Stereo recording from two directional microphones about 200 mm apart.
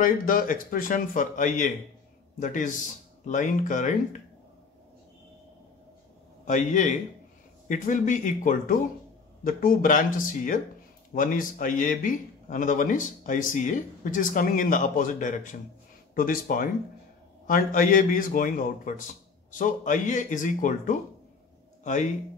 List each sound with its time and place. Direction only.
0.0 s a man's voice: 45° left (ahead or behind)
6.4 s a man's voice: 40° left (ahead or behind)